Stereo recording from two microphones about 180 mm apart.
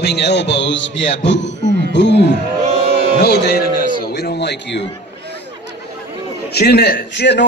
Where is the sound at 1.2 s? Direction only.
75° left (ahead or behind).